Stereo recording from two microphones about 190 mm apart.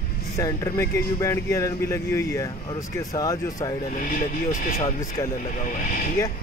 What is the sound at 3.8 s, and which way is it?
Speech, 45° left (ahead or behind).